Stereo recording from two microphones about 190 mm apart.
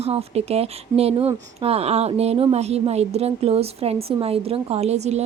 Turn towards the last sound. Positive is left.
turn(degrees=-35)  # may be behind; listen again after turning